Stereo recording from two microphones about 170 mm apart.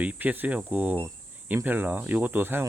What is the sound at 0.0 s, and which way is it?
Speech, 10° right (ahead or behind).